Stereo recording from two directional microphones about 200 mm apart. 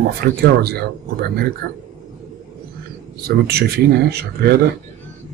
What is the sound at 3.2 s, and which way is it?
Speech, 50° right (ahead or behind).